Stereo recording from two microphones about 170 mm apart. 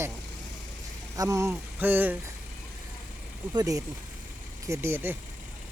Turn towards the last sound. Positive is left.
turn(degrees=-15)  # may be behind; listen again after turning